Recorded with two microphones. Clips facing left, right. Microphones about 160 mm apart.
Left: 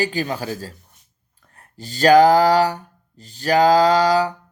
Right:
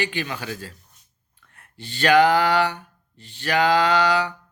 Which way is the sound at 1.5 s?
40° left (ahead or behind).